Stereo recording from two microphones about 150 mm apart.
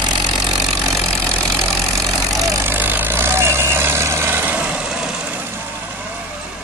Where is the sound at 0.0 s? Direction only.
30° right (ahead or behind).